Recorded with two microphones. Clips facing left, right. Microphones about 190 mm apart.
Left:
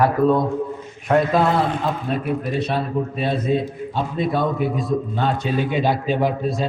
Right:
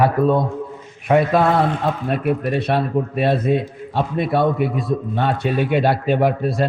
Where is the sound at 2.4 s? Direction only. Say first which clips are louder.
Right 3 dB; 60° right (ahead or behind).